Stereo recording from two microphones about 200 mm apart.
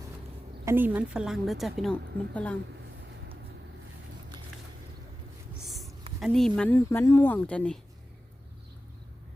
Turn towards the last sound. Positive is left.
turn(degrees=5)  # may be behind; listen again after turning